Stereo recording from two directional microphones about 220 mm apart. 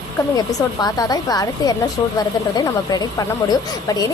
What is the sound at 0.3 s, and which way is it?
A woman's voice, 15° left (ahead or behind).